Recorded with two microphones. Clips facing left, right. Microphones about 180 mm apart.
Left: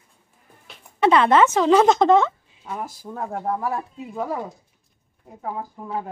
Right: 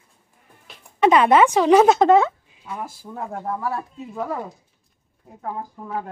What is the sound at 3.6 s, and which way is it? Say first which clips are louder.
Speech: left 1 dB; 20° left (ahead or behind).